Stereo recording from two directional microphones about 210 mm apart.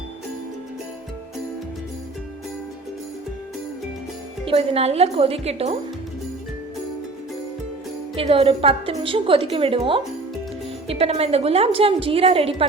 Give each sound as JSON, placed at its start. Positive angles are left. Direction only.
{"t": 4.4, "sound": "a woman's voice", "side_deg": -30}
{"t": 8.1, "sound": "a woman's voice", "side_deg": -25}